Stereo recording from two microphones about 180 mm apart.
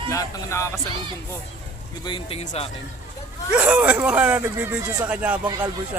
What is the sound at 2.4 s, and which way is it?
Speech, 40° left (ahead or behind).